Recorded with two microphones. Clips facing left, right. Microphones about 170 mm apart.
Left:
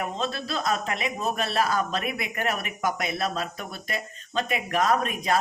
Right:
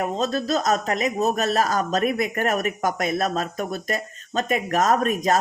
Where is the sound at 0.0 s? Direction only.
40° right (ahead or behind).